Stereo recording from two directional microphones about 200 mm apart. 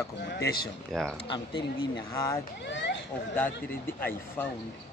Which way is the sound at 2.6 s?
60° left (ahead or behind).